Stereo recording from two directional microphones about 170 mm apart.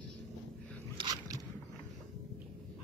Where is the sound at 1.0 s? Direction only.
25° right (ahead or behind).